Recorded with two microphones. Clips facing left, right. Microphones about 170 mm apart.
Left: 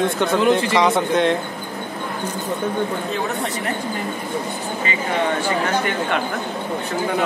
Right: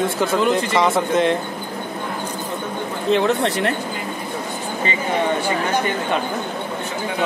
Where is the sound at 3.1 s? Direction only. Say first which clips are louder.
Right 6 dB; 90° right.